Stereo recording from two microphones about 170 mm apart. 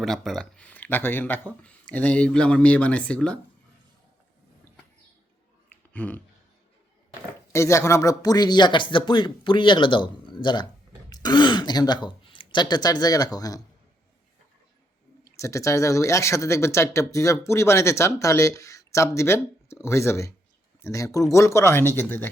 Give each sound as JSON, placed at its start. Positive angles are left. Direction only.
{"t": 0.0, "sound": "speech", "side_deg": 0}
{"t": 5.9, "sound": "speech", "side_deg": 10}
{"t": 7.5, "sound": "speech", "side_deg": 15}
{"t": 15.4, "sound": "speech", "side_deg": 15}